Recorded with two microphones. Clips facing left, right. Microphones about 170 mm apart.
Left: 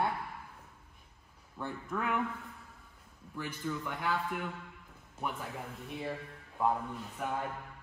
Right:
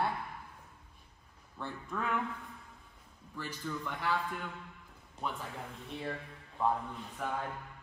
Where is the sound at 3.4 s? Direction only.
5° left (ahead or behind).